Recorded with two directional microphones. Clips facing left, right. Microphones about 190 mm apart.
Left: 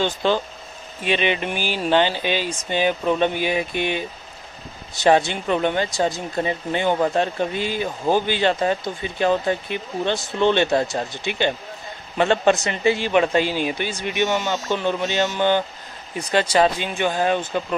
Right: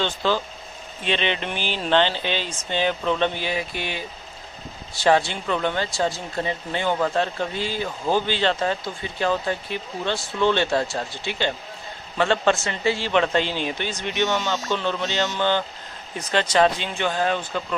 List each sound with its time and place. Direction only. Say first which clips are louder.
0.0 s speech: left 3 dB; 20° left (ahead or behind)